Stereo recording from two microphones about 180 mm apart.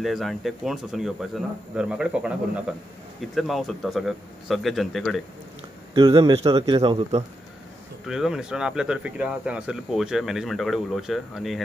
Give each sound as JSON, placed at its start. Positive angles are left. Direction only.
{"t": 0.0, "sound": "speech", "side_deg": 0}
{"t": 5.9, "sound": "a man's voice", "side_deg": -20}
{"t": 8.1, "sound": "speech", "side_deg": -5}